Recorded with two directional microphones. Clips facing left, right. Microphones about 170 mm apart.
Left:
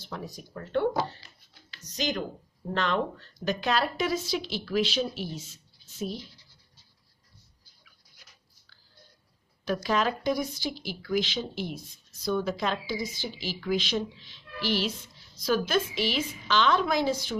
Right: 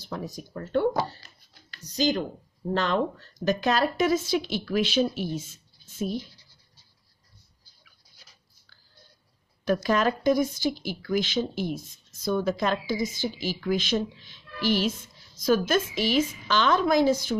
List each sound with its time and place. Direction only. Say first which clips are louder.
0.0 s speech: right 4 dB; 40° right (ahead or behind)
0.7 s a sound: right 2 dB; 40° right (ahead or behind)
1.9 s a woman's voice: right 6 dB; 30° right (ahead or behind); by 6.2 s 50° right (ahead or behind)
9.8 s a woman's voice: right 3 dB; 50° right (ahead or behind)